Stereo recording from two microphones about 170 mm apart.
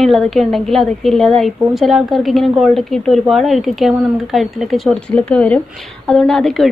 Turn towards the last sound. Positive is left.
turn(degrees=0)  # may be behind; listen again after turning